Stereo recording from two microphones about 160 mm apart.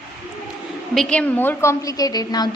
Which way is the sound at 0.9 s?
5° left (ahead or behind).